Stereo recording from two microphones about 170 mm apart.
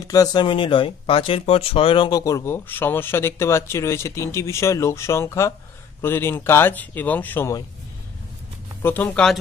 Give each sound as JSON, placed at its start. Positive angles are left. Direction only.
{"t": 0.0, "sound": "speech", "side_deg": 20}
{"t": 8.8, "sound": "speech", "side_deg": 10}